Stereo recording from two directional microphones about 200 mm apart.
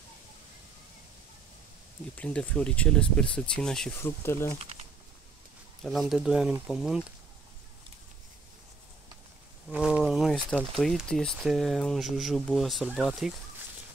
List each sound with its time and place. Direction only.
2.1 s speech: 5° left (ahead or behind)
4.6 s speech: 30° right (ahead or behind)
5.8 s speech: centre (ahead or behind)
9.7 s speech: 5° right (ahead or behind)